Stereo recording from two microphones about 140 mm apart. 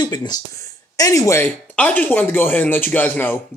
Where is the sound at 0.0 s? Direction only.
30° left (ahead or behind).